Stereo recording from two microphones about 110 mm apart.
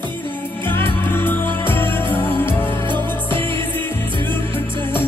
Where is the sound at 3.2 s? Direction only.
50° right (ahead or behind).